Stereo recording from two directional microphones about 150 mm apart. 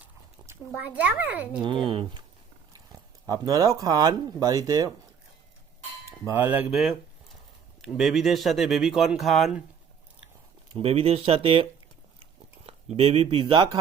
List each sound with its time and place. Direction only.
0.0 s a sound: 20° right (ahead or behind)
0.8 s speech: 10° right (ahead or behind)
1.9 s speech: 30° right (ahead or behind)
6.1 s speech: 15° right (ahead or behind); by 9.6 s centre (ahead or behind)
10.8 s speech: 40° right (ahead or behind)
12.6 s a sound: 40° right (ahead or behind)
13.3 s speech: 30° right (ahead or behind)